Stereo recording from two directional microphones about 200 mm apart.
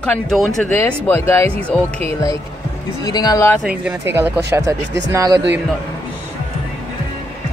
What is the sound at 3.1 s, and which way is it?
Speech, 20° left (ahead or behind).